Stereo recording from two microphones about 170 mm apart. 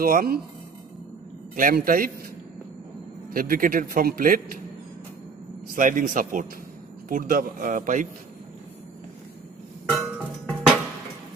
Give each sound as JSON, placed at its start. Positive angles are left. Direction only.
{"t": 0.0, "sound": "speech", "side_deg": -60}
{"t": 1.5, "sound": "a man's voice", "side_deg": -55}
{"t": 3.3, "sound": "speech", "side_deg": -55}
{"t": 5.7, "sound": "speech", "side_deg": -50}
{"t": 9.9, "sound": "music", "side_deg": 0}